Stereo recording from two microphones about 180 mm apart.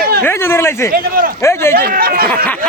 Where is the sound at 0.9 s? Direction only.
50° right (ahead or behind).